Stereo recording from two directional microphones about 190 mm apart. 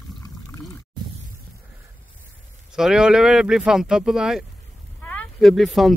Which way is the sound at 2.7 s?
5° right (ahead or behind).